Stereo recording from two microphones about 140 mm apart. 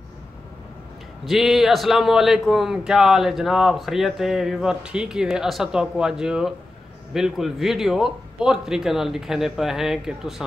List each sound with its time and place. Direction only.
1.2 s a man's voice: centre (ahead or behind)